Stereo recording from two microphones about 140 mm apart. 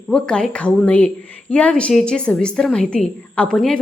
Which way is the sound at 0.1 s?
5° left (ahead or behind).